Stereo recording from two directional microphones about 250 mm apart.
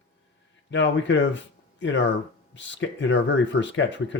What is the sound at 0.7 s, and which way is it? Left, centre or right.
Speech, left.